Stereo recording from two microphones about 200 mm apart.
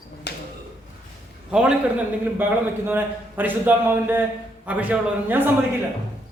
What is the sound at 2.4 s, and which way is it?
A man's voice, 10° right (ahead or behind).